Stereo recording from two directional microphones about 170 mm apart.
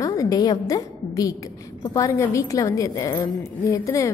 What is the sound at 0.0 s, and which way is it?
A woman's voice, 20° left (ahead or behind).